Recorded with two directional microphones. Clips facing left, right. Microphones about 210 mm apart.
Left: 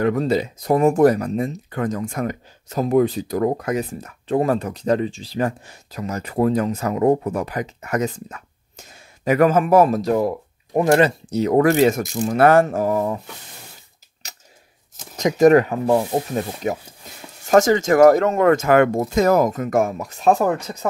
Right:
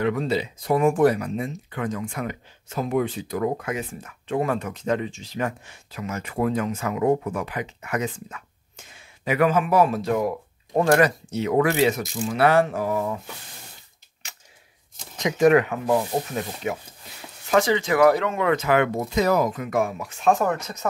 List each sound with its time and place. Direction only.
0.0 s speech: 45° left (ahead or behind)
14.2 s a sound: 40° left (ahead or behind)
15.1 s speech: 40° left (ahead or behind)